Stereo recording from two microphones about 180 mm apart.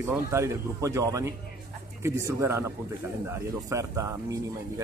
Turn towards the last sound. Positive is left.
turn(degrees=-15)  # may be behind; listen again after turning